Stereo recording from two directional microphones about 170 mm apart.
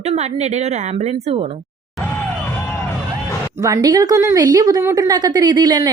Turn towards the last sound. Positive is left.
turn(degrees=-25)  # may be behind; listen again after turning